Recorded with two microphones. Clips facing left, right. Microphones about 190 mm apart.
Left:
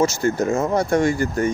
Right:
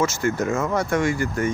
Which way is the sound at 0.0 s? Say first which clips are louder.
Left 3 dB; 35° left (ahead or behind).